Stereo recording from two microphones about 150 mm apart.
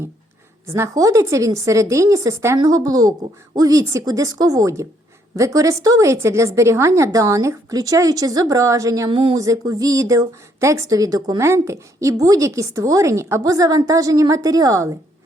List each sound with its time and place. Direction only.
0.7 s a woman's voice: 20° right (ahead or behind)
9.0 s speech: 35° right (ahead or behind)
9.4 s a woman's voice: 25° right (ahead or behind)